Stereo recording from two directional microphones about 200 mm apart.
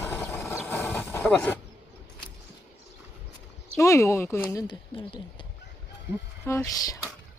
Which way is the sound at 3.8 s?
15° left (ahead or behind).